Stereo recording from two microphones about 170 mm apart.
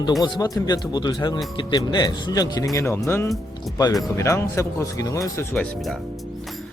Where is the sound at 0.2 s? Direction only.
20° left (ahead or behind).